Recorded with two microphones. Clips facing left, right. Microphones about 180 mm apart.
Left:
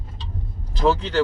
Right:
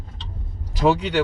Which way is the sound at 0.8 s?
15° right (ahead or behind).